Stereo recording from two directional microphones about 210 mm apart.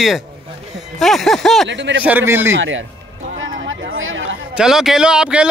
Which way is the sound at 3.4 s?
65° right (ahead or behind).